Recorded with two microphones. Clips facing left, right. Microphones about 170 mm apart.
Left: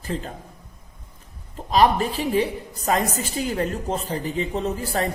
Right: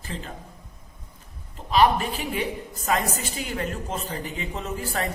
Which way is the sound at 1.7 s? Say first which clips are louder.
Left 2 dB; 35° left (ahead or behind).